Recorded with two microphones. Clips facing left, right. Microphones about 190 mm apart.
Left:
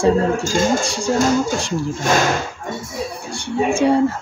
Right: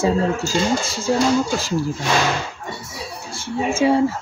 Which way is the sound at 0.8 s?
Centre (ahead or behind).